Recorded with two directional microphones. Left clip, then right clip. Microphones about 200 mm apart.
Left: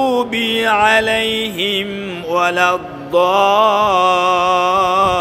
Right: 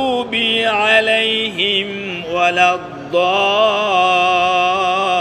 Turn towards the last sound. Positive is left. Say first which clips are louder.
# left 2 dB
turn(degrees=20)  # may be behind; listen again after turning